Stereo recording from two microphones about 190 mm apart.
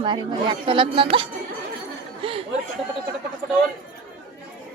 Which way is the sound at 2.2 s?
25° right (ahead or behind).